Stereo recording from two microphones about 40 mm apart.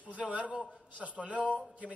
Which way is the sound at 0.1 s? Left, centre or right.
Right.